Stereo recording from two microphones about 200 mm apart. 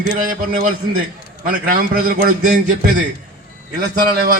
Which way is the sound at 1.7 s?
45° right (ahead or behind).